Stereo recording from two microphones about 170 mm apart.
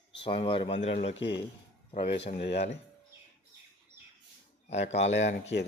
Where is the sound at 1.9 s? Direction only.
35° left (ahead or behind).